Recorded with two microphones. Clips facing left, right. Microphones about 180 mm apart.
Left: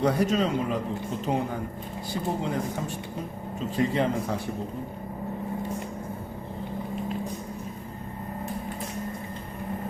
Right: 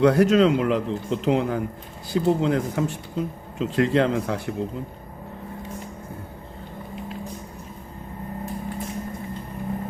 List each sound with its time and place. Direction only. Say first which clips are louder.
0.0 s speech: right 7 dB; 75° right (ahead or behind)